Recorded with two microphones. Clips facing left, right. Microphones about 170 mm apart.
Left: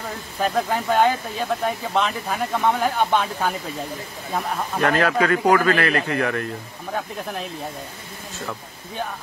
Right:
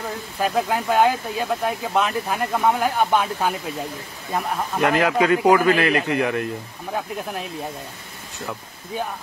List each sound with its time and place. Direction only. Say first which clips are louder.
0.4 s speech: even; 5° right (ahead or behind)
4.7 s speech: right 1 dB; 15° right (ahead or behind)